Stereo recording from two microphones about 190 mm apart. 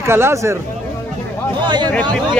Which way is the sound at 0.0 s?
15° right (ahead or behind).